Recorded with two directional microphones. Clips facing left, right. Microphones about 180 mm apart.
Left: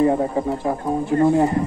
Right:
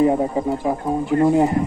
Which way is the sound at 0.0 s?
10° right (ahead or behind).